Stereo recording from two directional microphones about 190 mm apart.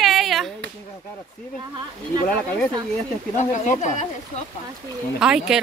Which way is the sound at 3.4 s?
40° left (ahead or behind).